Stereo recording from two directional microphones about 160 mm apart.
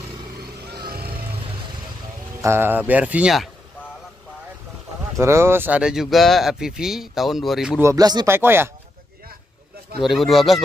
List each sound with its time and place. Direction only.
0.7 s vehicle: 75° right (ahead or behind)
2.4 s speech: 15° right (ahead or behind)
5.2 s speech: 15° right (ahead or behind)
7.8 s speech: 20° right (ahead or behind)
8.3 s speech: 15° right (ahead or behind)
10.0 s speech: centre (ahead or behind)